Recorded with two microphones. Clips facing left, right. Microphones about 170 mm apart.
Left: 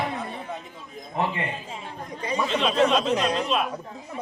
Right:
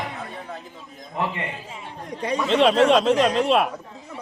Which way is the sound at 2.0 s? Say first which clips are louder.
Right 4 dB; 75° right (ahead or behind).